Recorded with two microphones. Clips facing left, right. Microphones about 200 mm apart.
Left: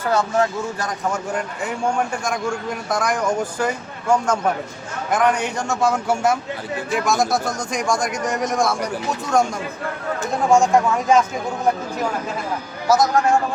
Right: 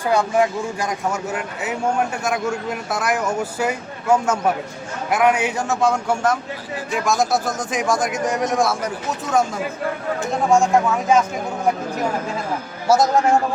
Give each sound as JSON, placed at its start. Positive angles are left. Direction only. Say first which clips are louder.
{"t": 0.0, "sound": "a man's voice", "louder": "right 1 dB", "side_deg": -15}
{"t": 10.6, "sound": "a man's voice", "louder": "even", "side_deg": 0}
{"t": 12.9, "sound": "a man's voice", "louder": "right 1 dB", "side_deg": -30}